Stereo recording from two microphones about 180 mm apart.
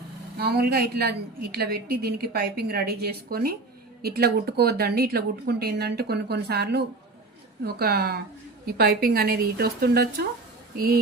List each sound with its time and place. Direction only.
0.3 s a woman's voice: 60° right (ahead or behind)